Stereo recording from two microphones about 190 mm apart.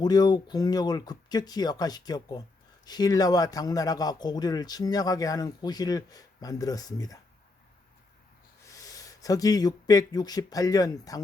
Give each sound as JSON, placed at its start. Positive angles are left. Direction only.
{"t": 0.0, "sound": "a man's voice", "side_deg": 20}
{"t": 8.7, "sound": "speech", "side_deg": 20}